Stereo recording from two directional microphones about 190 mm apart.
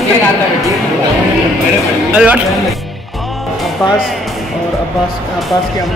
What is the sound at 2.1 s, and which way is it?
Speech, 5° right (ahead or behind).